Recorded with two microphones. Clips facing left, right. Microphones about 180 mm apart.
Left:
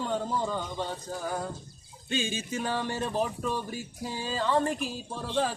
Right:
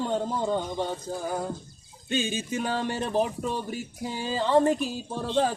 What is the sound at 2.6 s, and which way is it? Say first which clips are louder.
Speech: even; 15° right (ahead or behind).